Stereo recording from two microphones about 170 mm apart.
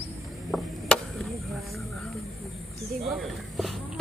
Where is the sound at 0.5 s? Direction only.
Centre (ahead or behind).